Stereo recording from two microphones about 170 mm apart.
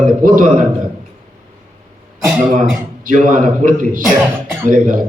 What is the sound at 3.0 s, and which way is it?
A man's voice, 50° right (ahead or behind).